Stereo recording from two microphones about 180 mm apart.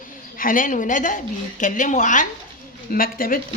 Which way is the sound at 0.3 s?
50° left (ahead or behind).